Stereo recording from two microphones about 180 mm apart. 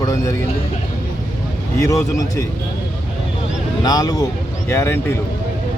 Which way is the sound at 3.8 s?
20° left (ahead or behind).